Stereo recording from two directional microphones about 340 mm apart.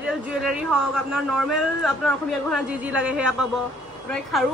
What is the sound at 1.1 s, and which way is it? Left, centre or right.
A man's voice, centre.